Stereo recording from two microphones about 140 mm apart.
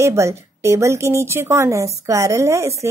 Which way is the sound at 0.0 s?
20° right (ahead or behind).